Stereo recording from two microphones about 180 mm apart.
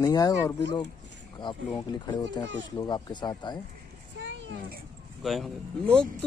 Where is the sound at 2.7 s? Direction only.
25° left (ahead or behind).